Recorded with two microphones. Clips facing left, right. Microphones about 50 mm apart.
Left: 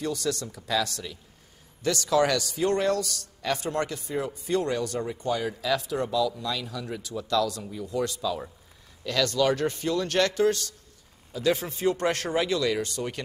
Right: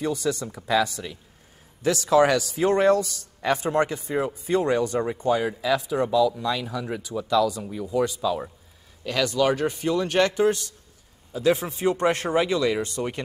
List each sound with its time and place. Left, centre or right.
0.0 s a man's voice: centre